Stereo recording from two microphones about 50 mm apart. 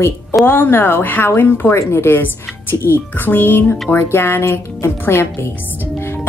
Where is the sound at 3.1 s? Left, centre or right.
Left.